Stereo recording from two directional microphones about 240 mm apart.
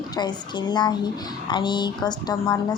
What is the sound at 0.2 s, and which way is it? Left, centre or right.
A woman's voice, centre.